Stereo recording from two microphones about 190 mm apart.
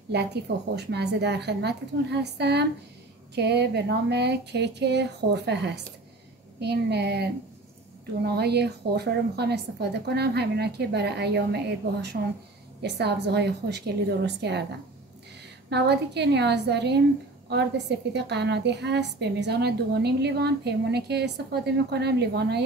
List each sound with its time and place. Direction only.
0.1 s a woman's voice: 60° right (ahead or behind)
8.3 s a woman's voice: 60° right (ahead or behind)
15.7 s a woman's voice: 60° right (ahead or behind)